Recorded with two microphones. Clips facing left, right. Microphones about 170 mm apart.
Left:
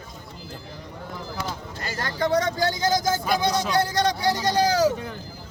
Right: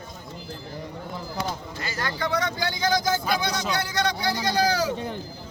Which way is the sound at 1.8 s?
45° left (ahead or behind).